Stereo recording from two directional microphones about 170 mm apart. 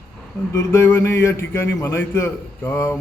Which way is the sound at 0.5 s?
15° left (ahead or behind).